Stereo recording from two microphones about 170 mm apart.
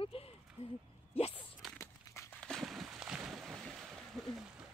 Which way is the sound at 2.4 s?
Centre (ahead or behind).